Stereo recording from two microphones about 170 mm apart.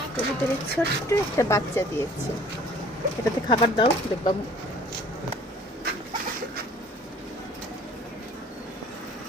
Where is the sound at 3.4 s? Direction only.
30° left (ahead or behind).